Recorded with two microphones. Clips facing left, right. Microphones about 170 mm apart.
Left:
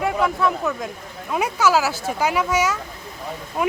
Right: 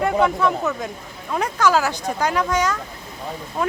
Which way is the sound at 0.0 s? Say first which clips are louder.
Right 2 dB; centre (ahead or behind).